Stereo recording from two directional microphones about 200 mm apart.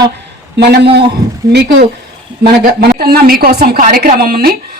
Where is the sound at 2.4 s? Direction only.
50° right (ahead or behind).